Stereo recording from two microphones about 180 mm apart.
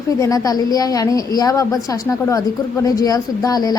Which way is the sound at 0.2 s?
20° left (ahead or behind).